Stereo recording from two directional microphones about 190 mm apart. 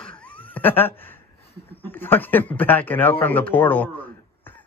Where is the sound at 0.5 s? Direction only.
10° left (ahead or behind).